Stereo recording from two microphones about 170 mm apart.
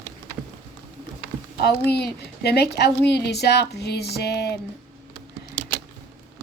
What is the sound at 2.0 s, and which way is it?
A woman's voice, 75° left (ahead or behind).